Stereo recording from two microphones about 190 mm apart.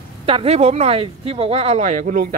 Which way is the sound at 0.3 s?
30° right (ahead or behind).